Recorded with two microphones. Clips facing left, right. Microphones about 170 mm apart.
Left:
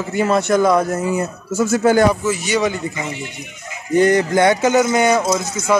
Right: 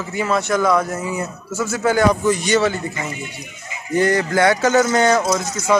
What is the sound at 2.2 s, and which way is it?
Speech, 5° left (ahead or behind).